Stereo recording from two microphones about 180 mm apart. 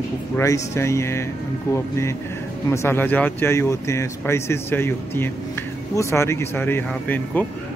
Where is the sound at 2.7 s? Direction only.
15° left (ahead or behind).